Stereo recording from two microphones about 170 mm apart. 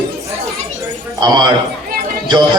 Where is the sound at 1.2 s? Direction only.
25° right (ahead or behind).